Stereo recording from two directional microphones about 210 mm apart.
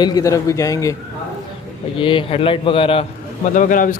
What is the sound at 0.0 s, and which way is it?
Speech, 15° left (ahead or behind).